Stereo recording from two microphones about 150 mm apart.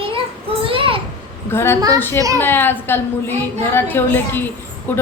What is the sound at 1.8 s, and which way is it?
Speech, 25° right (ahead or behind).